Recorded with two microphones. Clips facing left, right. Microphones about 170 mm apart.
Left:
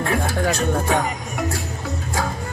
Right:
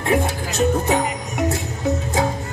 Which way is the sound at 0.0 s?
20° right (ahead or behind).